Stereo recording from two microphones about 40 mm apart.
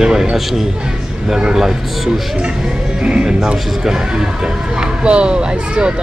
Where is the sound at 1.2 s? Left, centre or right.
Centre.